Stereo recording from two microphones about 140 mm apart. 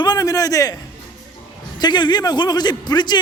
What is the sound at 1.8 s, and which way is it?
A man's voice, 30° left (ahead or behind).